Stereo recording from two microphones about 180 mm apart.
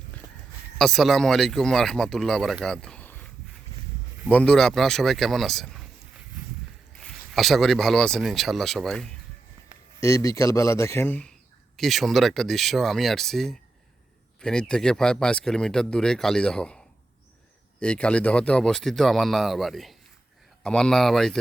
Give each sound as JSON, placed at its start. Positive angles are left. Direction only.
{"t": 0.8, "sound": "speech", "side_deg": 0}
{"t": 4.3, "sound": "speech", "side_deg": 5}
{"t": 7.0, "sound": "speech", "side_deg": 0}
{"t": 10.0, "sound": "a man's voice", "side_deg": 20}